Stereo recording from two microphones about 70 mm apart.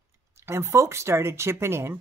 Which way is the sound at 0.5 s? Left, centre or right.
Right.